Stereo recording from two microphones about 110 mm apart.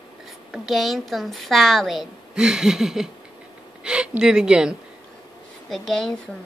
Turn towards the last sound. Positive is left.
turn(degrees=0)  # may be behind; listen again after turning